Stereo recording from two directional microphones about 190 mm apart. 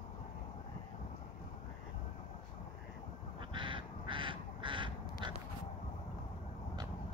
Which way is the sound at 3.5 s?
25° right (ahead or behind).